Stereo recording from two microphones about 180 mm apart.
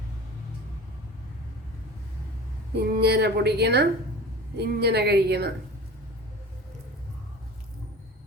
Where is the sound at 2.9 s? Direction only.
65° right (ahead or behind).